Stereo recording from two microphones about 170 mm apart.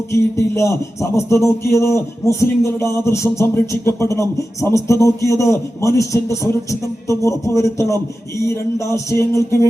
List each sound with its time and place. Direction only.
0.1 s music: 15° left (ahead or behind)